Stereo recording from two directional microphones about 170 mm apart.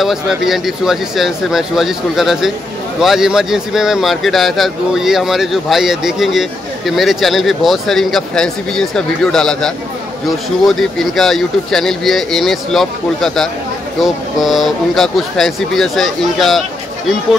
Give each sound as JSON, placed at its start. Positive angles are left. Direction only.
{"t": 0.0, "sound": "speech", "side_deg": 0}
{"t": 10.8, "sound": "speech", "side_deg": 0}